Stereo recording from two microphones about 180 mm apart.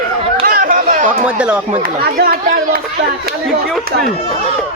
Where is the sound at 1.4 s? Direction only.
5° right (ahead or behind).